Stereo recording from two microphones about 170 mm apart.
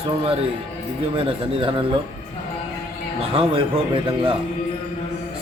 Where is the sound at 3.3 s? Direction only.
30° right (ahead or behind).